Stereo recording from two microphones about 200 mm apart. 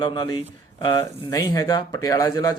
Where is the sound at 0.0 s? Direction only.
25° left (ahead or behind).